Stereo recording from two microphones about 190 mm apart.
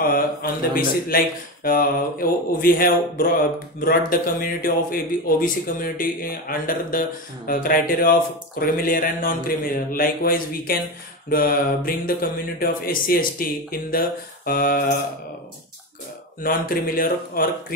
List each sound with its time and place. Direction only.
0.0 s speech: 50° left (ahead or behind)
16.4 s speech: 50° left (ahead or behind)